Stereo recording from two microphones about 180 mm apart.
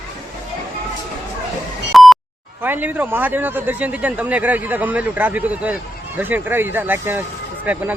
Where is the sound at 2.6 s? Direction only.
10° right (ahead or behind).